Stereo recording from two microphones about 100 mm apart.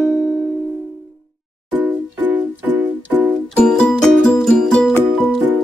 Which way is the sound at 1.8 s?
15° right (ahead or behind).